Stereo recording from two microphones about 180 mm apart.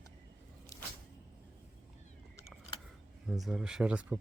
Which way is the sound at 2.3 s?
15° left (ahead or behind).